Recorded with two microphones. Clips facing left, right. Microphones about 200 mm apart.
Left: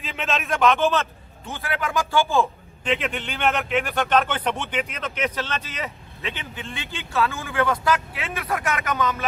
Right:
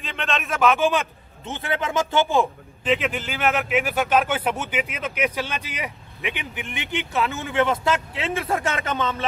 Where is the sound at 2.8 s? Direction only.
Centre (ahead or behind).